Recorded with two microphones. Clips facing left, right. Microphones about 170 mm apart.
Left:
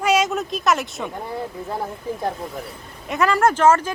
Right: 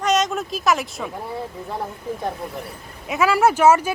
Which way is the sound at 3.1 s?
5° right (ahead or behind).